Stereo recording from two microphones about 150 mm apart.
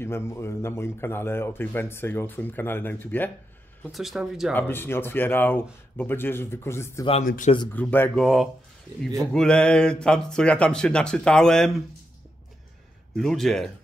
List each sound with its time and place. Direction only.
0.0 s a man's voice: 15° left (ahead or behind)
3.9 s speech: centre (ahead or behind)
4.6 s a man's voice: 15° left (ahead or behind)
7.2 s speech: 60° left (ahead or behind)
7.7 s a man's voice: 10° left (ahead or behind)
8.2 s speech: centre (ahead or behind)
13.1 s speech: centre (ahead or behind)